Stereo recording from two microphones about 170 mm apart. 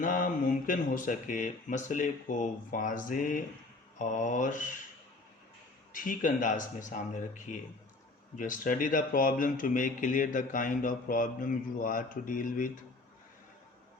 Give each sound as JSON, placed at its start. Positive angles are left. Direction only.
{"t": 0.0, "sound": "speech", "side_deg": 50}
{"t": 5.9, "sound": "speech", "side_deg": 50}